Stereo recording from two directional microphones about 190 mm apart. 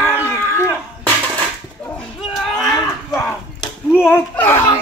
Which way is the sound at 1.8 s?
5° left (ahead or behind).